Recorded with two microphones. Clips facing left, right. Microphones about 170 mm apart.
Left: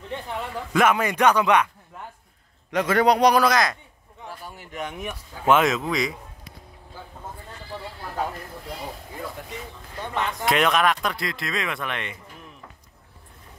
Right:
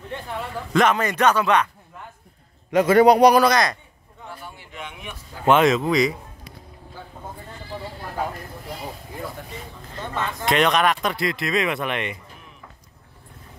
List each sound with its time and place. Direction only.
0.1 s speech: 10° left (ahead or behind)
2.7 s a man's voice: 5° right (ahead or behind)
4.6 s a sound: 45° left (ahead or behind)
5.4 s a man's voice: centre (ahead or behind)
9.9 s a sound: 15° left (ahead or behind)
10.4 s a man's voice: 5° left (ahead or behind)
11.4 s speech: 15° right (ahead or behind)